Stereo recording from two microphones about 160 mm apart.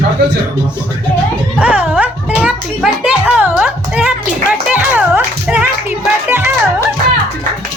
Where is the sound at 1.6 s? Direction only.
5° right (ahead or behind).